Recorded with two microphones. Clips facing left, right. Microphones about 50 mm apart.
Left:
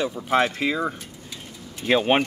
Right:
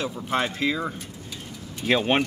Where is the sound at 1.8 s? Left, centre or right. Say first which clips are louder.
Left 2 dB; centre.